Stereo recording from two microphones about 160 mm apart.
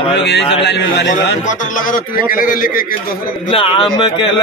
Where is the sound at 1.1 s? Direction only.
55° left (ahead or behind).